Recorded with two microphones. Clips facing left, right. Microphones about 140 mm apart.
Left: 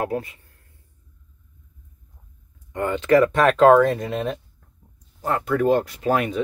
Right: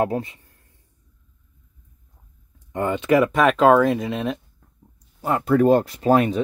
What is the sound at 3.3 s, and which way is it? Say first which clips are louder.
Speech: left 1 dB; centre (ahead or behind).